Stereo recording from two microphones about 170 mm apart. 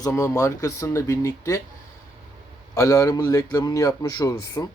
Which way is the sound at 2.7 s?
20° left (ahead or behind).